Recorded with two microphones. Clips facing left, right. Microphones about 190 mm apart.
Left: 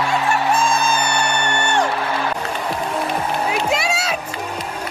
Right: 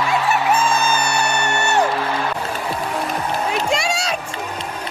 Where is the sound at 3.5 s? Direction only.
5° left (ahead or behind).